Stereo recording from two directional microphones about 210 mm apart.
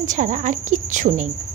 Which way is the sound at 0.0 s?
35° right (ahead or behind).